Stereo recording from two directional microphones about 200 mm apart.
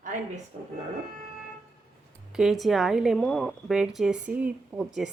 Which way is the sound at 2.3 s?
Centre (ahead or behind).